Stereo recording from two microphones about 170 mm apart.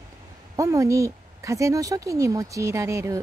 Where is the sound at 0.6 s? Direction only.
20° right (ahead or behind).